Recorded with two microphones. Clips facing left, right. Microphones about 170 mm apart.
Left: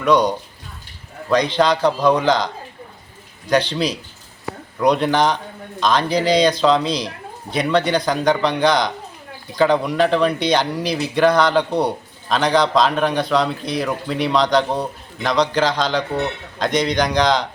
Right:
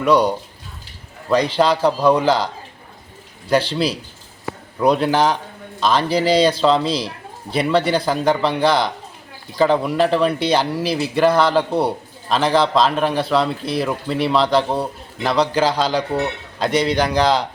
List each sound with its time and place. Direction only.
0.0 s a man's voice: 10° right (ahead or behind)
3.5 s speech: 5° right (ahead or behind)